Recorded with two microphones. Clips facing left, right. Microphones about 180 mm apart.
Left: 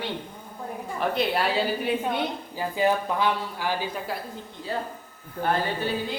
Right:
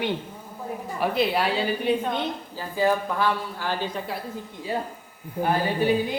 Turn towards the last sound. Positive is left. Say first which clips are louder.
# right 6 dB
turn(degrees=-15)  # may be behind; listen again after turning